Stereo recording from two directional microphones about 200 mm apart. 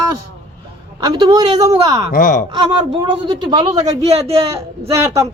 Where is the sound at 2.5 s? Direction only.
25° right (ahead or behind).